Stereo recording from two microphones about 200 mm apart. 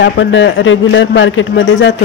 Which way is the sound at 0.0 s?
65° left (ahead or behind).